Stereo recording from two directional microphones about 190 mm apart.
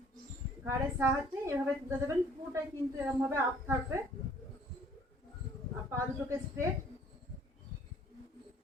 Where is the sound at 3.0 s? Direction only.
10° right (ahead or behind).